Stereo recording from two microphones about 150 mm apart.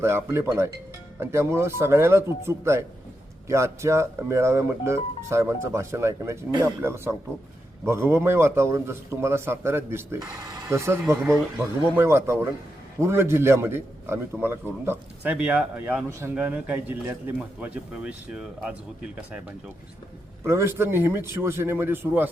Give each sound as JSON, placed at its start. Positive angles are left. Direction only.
{"t": 0.0, "sound": "a man's voice", "side_deg": -15}
{"t": 20.4, "sound": "a man's voice", "side_deg": -20}